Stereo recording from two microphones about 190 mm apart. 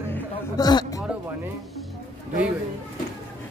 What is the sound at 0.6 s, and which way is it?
Speech, 20° left (ahead or behind).